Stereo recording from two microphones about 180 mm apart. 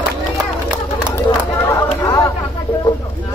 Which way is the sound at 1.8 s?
20° left (ahead or behind).